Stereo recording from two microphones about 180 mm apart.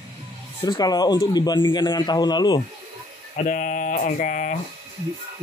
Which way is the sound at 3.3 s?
45° left (ahead or behind).